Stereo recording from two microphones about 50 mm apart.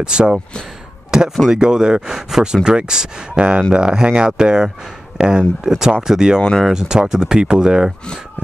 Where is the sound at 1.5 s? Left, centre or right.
Centre.